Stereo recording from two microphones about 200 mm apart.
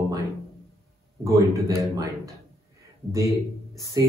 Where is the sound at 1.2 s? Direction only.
15° right (ahead or behind).